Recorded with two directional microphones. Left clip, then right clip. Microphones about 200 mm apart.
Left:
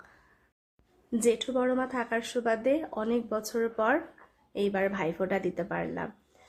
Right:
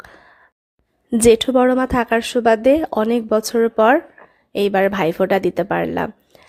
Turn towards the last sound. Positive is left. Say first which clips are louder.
# right 14 dB
turn(degrees=-45)  # may be behind; listen again after turning